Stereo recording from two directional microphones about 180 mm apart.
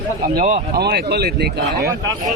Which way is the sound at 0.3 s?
50° right (ahead or behind).